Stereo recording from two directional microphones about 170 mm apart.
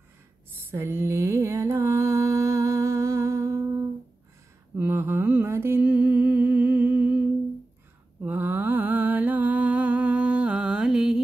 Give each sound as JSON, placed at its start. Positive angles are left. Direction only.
{"t": 0.7, "sound": "music", "side_deg": -15}
{"t": 4.7, "sound": "humming", "side_deg": -15}
{"t": 8.2, "sound": "music", "side_deg": -10}